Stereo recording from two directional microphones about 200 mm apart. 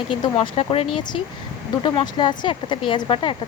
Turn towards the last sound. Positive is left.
turn(degrees=25)  # may be behind; listen again after turning